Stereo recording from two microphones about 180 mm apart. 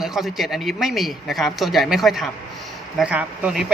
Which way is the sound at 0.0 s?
Centre (ahead or behind).